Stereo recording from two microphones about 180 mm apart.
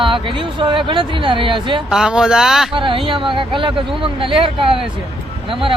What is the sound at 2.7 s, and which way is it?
Speech, 30° right (ahead or behind).